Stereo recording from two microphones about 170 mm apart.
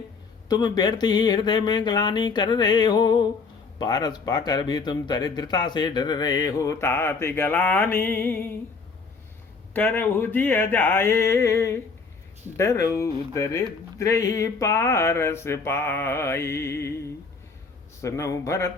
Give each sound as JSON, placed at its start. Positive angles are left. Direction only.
{"t": 0.4, "sound": "speech", "side_deg": 25}
{"t": 9.7, "sound": "speech", "side_deg": 10}
{"t": 18.0, "sound": "speech", "side_deg": 15}